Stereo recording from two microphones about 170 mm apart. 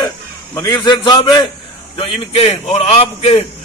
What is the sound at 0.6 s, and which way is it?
A man's voice, 25° left (ahead or behind).